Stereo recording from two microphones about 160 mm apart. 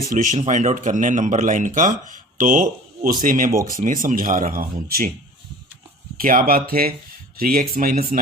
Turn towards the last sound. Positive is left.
turn(degrees=-60)  # may be behind; listen again after turning